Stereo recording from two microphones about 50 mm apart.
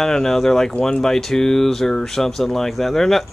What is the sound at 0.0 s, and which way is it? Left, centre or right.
Speech, centre.